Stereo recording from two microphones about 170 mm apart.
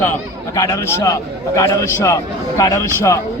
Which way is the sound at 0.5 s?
20° left (ahead or behind).